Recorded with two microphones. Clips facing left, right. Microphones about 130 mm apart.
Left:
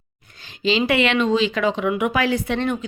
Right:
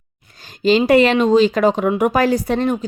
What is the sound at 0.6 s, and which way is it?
Speech, 45° right (ahead or behind).